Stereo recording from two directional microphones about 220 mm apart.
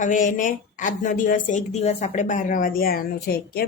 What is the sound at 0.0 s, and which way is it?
Speech, 35° left (ahead or behind).